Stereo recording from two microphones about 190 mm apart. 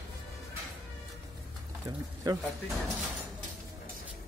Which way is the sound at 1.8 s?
20° right (ahead or behind).